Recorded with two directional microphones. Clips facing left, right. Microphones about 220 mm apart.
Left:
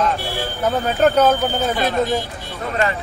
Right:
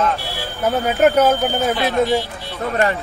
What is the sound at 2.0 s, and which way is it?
Speech, 45° left (ahead or behind).